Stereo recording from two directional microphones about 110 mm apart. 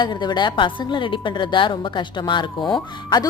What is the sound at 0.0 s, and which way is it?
A woman's voice, 40° left (ahead or behind).